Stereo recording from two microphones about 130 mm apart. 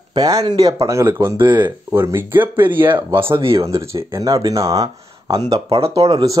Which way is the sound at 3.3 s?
45° right (ahead or behind).